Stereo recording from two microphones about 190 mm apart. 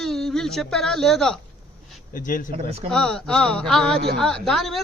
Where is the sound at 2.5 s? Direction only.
30° right (ahead or behind).